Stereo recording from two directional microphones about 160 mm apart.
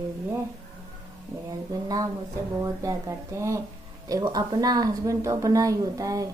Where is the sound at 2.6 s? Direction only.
20° right (ahead or behind).